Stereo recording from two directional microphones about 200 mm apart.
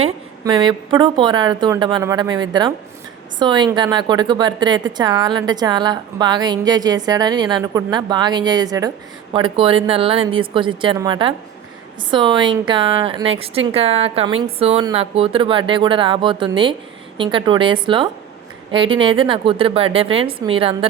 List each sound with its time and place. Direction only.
0.4 s a woman's voice: 25° right (ahead or behind)